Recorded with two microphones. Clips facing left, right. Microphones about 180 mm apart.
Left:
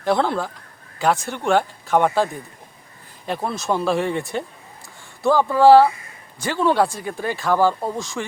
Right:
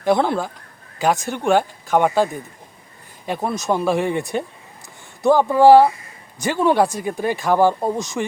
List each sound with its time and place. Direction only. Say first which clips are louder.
0.0 s speech: right 2 dB; 15° right (ahead or behind)
3.2 s speech: right 2 dB; 15° right (ahead or behind)